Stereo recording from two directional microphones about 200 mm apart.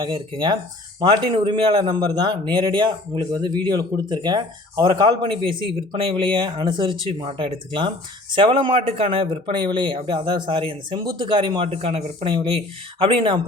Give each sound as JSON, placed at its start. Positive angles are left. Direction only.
{"t": 0.0, "sound": "speech", "side_deg": -25}